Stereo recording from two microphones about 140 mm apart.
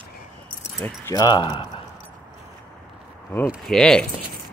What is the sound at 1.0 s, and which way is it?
Speech, 30° left (ahead or behind).